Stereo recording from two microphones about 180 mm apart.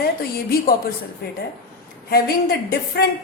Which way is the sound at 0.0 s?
60° left (ahead or behind).